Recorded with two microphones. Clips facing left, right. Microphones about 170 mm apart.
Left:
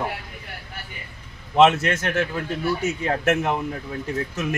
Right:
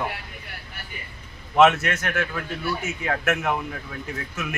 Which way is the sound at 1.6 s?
30° left (ahead or behind).